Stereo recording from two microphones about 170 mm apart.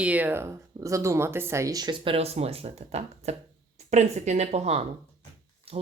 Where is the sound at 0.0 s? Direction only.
10° right (ahead or behind).